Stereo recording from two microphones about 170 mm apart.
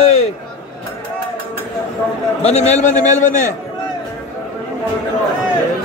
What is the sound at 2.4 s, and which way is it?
A man's voice, 40° left (ahead or behind).